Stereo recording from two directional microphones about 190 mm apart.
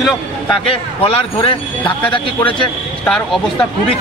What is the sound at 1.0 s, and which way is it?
Speech, 30° left (ahead or behind).